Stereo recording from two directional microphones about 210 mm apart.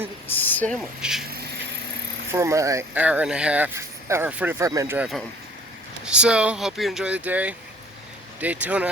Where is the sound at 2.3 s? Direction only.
15° right (ahead or behind).